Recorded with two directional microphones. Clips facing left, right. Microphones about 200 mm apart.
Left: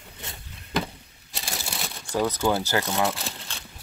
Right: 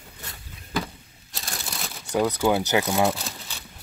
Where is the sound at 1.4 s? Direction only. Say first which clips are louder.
Left 1 dB; 5° left (ahead or behind).